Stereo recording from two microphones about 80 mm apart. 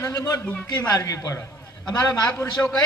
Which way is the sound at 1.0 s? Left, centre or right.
Left.